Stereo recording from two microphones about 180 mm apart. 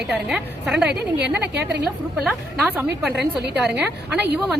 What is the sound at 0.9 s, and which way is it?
Speech, 70° right (ahead or behind).